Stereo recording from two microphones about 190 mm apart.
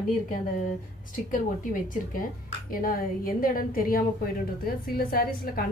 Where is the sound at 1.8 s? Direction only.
45° left (ahead or behind).